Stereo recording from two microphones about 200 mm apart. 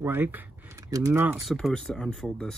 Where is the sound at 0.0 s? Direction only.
10° right (ahead or behind).